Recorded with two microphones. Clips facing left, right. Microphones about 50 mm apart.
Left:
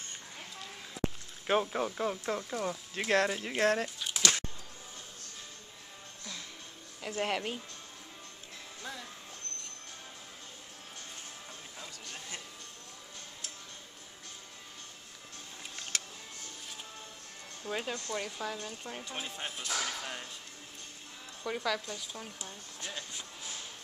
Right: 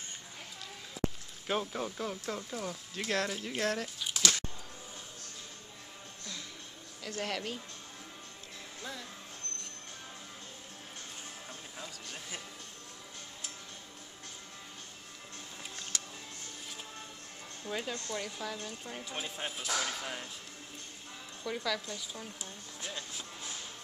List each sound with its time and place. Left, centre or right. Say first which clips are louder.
1.5 s speech: left 4 dB; centre
4.0 s a sound: even; centre
7.1 s speech: left 3 dB; centre
11.8 s music: even; centre
17.6 s speech: left 1 dB; centre
21.5 s speech: left 2 dB; centre